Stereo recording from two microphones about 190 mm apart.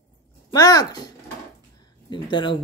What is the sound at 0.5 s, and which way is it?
Speech, 20° left (ahead or behind).